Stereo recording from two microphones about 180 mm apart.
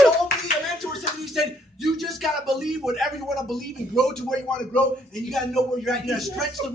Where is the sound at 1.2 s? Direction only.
Centre (ahead or behind).